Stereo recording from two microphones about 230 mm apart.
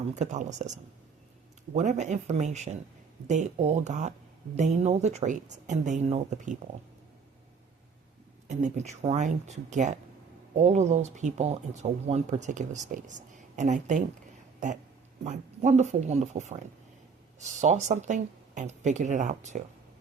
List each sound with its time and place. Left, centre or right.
0.1 s speech: right
1.7 s speech: right
8.4 s speech: right
15.2 s speech: right